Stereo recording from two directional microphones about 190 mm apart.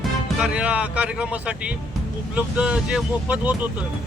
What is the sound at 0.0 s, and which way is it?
Speech, 5° right (ahead or behind).